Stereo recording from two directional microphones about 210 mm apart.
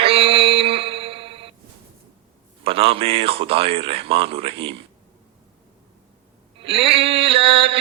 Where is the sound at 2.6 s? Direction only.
25° right (ahead or behind).